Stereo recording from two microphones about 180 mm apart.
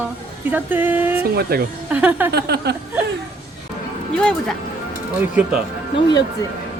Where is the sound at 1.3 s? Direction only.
60° right (ahead or behind).